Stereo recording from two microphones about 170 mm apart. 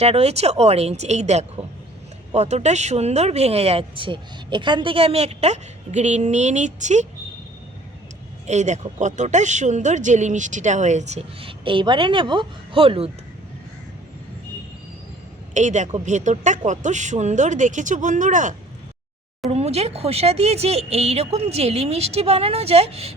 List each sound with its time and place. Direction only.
0.0 s speech: 35° right (ahead or behind)
8.4 s speech: 45° right (ahead or behind)
15.5 s speech: 45° right (ahead or behind)